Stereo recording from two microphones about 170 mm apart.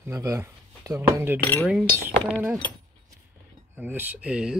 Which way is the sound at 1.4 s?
15° left (ahead or behind).